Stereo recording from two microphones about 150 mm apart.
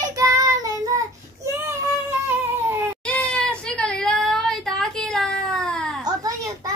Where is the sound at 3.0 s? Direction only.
5° left (ahead or behind).